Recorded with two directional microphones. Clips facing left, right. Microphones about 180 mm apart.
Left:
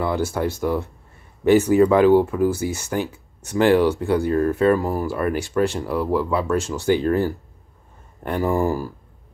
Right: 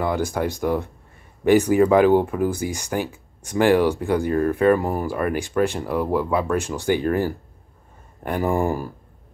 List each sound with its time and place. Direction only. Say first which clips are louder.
0.0 s speech: even; 15° right (ahead or behind)